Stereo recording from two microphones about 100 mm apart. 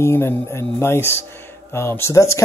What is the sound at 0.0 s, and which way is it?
Speech, 25° left (ahead or behind).